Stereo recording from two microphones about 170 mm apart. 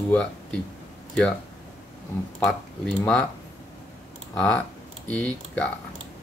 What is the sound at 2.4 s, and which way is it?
Speech, 5° left (ahead or behind).